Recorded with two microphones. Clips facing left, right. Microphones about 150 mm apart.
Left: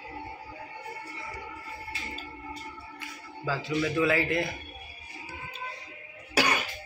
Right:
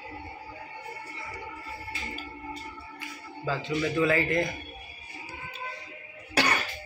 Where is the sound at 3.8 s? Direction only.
5° left (ahead or behind).